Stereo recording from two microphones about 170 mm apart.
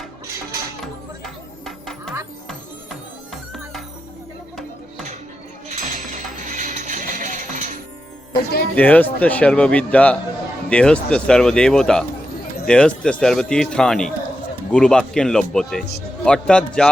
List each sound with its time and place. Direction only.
1.2 s music: centre (ahead or behind)
3.5 s music: centre (ahead or behind)
5.6 s music: 45° right (ahead or behind)
8.4 s speech: 70° left (ahead or behind)
8.7 s a man's voice: 10° left (ahead or behind)